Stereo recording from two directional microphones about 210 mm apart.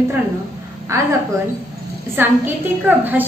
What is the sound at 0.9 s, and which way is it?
Speech, 15° right (ahead or behind).